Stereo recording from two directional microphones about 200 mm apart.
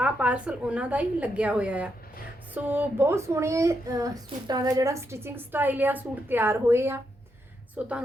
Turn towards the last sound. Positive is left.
turn(degrees=-10)  # may be behind; listen again after turning